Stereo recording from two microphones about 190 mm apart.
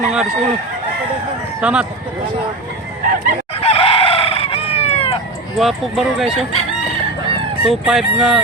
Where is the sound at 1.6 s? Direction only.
5° right (ahead or behind).